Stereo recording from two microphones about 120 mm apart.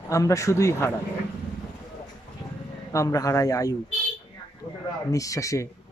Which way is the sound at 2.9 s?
30° left (ahead or behind).